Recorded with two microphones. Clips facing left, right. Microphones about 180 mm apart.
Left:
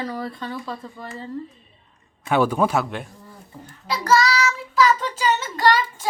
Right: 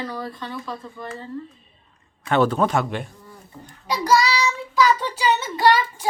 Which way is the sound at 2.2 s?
10° left (ahead or behind).